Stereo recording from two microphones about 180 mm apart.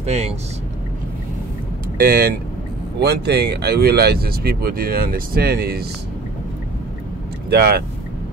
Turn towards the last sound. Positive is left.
turn(degrees=-60)  # may be behind; listen again after turning